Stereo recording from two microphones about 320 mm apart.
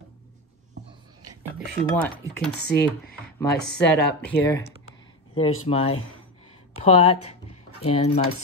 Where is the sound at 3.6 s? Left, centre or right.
Left.